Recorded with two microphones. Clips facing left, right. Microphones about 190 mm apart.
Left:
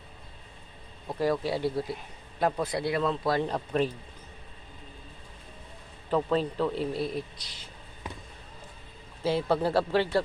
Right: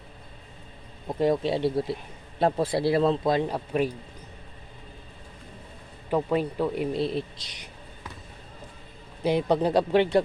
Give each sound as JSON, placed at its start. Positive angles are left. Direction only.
{"t": 1.0, "sound": "speech", "side_deg": -20}
{"t": 3.2, "sound": "speech", "side_deg": -15}
{"t": 6.1, "sound": "speech", "side_deg": -15}
{"t": 7.0, "sound": "speech", "side_deg": -25}
{"t": 9.2, "sound": "speech", "side_deg": -15}